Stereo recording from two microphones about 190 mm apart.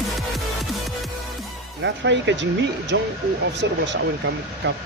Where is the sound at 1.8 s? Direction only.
70° right (ahead or behind).